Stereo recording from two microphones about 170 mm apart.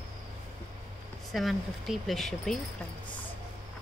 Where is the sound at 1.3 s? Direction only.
Centre (ahead or behind).